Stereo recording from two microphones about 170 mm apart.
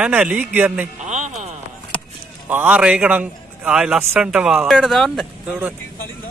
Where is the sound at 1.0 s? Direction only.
45° right (ahead or behind).